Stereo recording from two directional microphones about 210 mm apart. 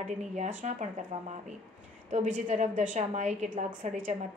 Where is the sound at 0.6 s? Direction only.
35° right (ahead or behind).